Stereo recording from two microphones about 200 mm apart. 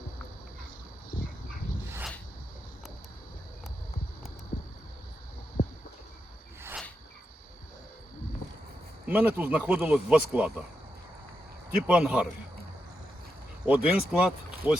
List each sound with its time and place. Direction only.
1.1 s dog: 45° left (ahead or behind)
9.0 s speech: 10° right (ahead or behind)
11.8 s a man's voice: 5° right (ahead or behind)
13.7 s speech: 5° right (ahead or behind)